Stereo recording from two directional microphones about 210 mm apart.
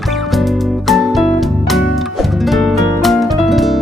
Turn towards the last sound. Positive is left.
turn(degrees=0)  # may be behind; listen again after turning